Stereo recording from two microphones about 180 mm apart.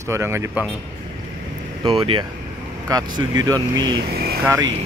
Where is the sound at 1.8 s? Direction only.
30° right (ahead or behind); by 4.7 s 15° right (ahead or behind).